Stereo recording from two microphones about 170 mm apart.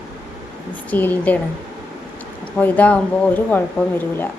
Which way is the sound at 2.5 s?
10° left (ahead or behind).